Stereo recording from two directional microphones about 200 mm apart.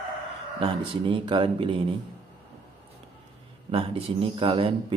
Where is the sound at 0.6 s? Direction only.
25° right (ahead or behind).